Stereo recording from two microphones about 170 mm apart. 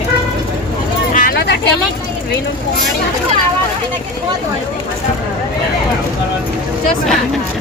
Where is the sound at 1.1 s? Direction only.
60° left (ahead or behind).